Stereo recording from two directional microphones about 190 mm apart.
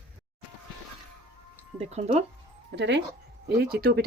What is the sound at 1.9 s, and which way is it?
Speech, 35° right (ahead or behind).